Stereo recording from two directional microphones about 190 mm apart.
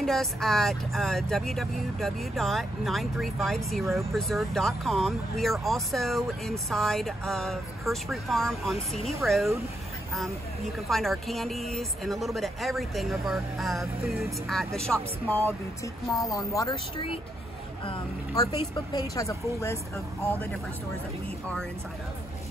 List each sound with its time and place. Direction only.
0.0 s speech: centre (ahead or behind)
10.9 s speech: centre (ahead or behind); by 18.6 s 25° left (ahead or behind)
18.9 s speech: 15° left (ahead or behind)